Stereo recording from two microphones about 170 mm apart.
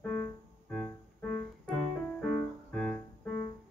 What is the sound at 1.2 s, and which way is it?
Keyboard, 5° left (ahead or behind).